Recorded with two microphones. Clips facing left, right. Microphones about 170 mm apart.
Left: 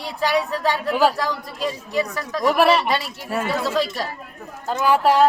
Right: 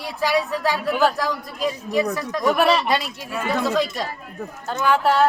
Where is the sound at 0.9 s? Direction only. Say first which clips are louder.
Left 2 dB; 10° left (ahead or behind).